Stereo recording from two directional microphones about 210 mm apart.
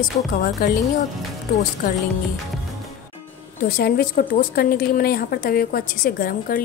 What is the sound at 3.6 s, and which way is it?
A woman's voice, 45° left (ahead or behind).